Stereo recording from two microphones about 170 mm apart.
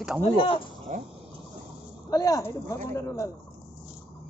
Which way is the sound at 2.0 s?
20° left (ahead or behind).